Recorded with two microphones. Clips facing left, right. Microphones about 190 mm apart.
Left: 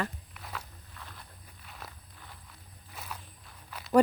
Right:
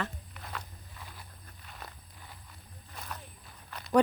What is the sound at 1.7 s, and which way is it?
Walk, centre (ahead or behind).